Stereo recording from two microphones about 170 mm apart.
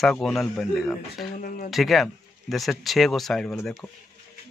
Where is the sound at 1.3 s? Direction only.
55° left (ahead or behind).